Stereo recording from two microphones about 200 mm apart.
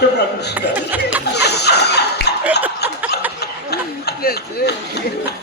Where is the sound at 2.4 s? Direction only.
10° right (ahead or behind).